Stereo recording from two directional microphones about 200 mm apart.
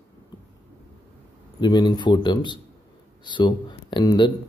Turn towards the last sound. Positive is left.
turn(degrees=25)  # may be behind; listen again after turning